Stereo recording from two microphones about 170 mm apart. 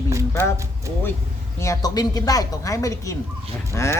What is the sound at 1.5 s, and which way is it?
A woman's voice, 15° left (ahead or behind).